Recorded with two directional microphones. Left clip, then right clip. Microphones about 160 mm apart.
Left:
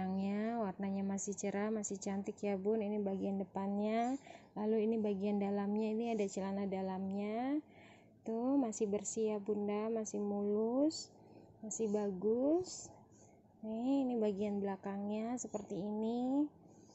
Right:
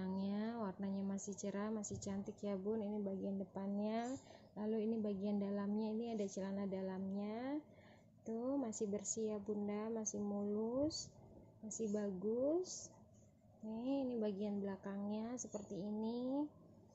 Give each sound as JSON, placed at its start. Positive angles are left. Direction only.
{"t": 0.0, "sound": "a woman's voice", "side_deg": 35}